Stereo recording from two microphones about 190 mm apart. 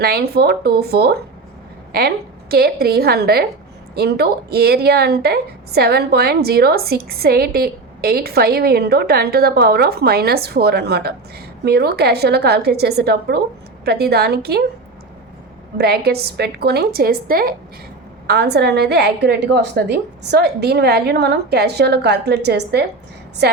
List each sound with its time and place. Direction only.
0.0 s a woman's voice: 55° right (ahead or behind)
15.8 s a woman's voice: 55° right (ahead or behind)